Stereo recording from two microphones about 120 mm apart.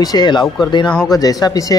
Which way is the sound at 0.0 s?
35° left (ahead or behind).